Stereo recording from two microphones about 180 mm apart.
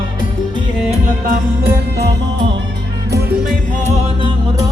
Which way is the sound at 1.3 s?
60° right (ahead or behind).